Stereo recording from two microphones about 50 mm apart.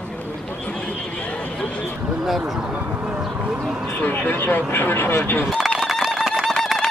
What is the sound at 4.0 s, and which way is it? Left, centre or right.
Speech, left.